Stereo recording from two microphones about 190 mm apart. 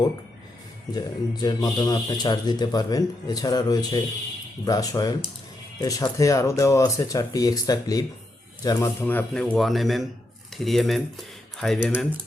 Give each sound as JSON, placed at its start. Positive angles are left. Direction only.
{"t": 0.9, "sound": "speech", "side_deg": 20}